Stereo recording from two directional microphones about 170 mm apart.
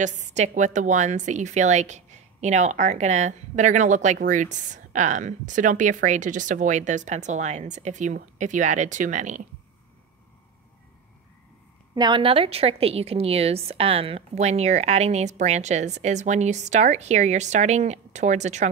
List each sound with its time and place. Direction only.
0.0 s a woman's voice: 45° right (ahead or behind)
11.9 s a woman's voice: 25° right (ahead or behind); by 18.7 s 45° right (ahead or behind)